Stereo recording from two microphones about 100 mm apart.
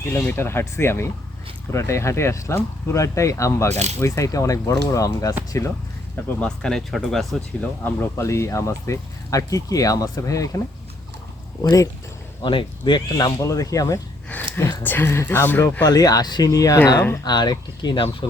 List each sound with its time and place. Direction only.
0.2 s speech: 20° left (ahead or behind)
6.2 s speech: 10° left (ahead or behind)
7.9 s speech: 20° left (ahead or behind)
12.4 s speech: 50° left (ahead or behind)
13.1 s speech: 35° left (ahead or behind)
14.5 s speech: 25° left (ahead or behind)
15.8 s speech: 40° left (ahead or behind)
18.2 s speech: 60° left (ahead or behind)